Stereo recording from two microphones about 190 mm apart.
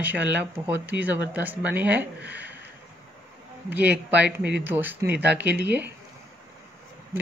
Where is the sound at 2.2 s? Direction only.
60° right (ahead or behind).